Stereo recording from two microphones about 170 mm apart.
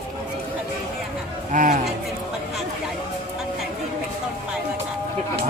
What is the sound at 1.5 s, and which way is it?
Chatter, 50° right (ahead or behind).